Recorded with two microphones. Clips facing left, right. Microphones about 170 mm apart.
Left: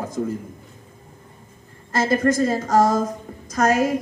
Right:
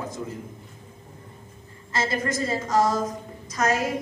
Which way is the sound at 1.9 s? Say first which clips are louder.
Left 8 dB; 50° left (ahead or behind).